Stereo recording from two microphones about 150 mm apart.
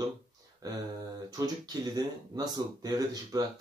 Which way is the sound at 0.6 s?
25° right (ahead or behind).